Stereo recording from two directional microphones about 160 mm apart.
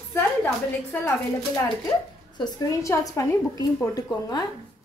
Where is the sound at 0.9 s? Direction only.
15° left (ahead or behind).